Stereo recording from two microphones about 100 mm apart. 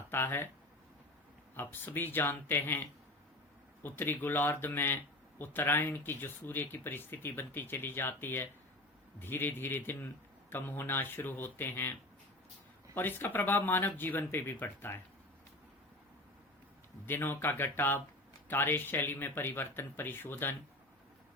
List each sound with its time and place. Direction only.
0.1 s speech: 20° left (ahead or behind)
1.5 s speech: 20° left (ahead or behind)
17.1 s speech: 20° left (ahead or behind)